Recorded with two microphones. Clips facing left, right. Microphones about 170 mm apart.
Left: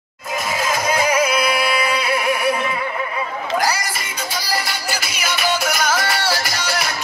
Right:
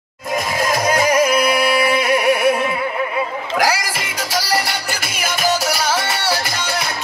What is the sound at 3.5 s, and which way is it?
Music, 90° right.